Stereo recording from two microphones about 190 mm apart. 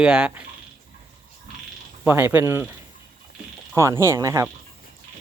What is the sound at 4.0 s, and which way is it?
Speech, 15° right (ahead or behind).